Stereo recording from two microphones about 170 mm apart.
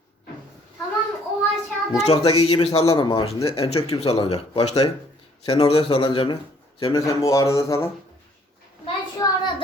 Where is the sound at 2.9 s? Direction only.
20° left (ahead or behind).